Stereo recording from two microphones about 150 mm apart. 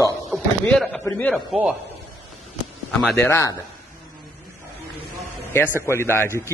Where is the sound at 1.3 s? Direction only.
Centre (ahead or behind).